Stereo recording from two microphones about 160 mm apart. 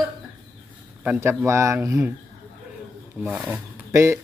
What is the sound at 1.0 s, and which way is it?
Speech, 15° right (ahead or behind).